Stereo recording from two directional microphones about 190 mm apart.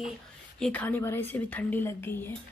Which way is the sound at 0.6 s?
5° left (ahead or behind).